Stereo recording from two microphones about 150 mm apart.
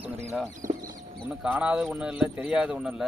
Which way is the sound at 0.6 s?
65° right (ahead or behind).